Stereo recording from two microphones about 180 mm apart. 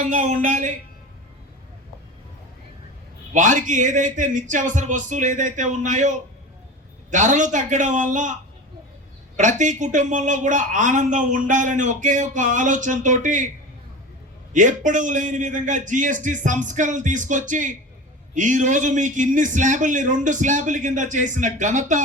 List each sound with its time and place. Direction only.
0.0 s speech: 45° right (ahead or behind)
3.3 s speech: 45° right (ahead or behind)
14.5 s speech: 45° right (ahead or behind)